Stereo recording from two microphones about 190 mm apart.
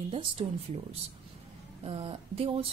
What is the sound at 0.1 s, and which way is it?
Speech, 30° right (ahead or behind).